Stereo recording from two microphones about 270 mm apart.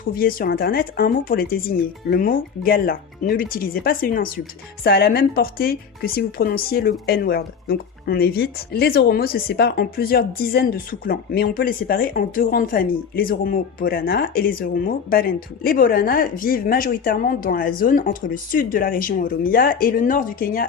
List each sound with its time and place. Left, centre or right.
0.2 s speech: left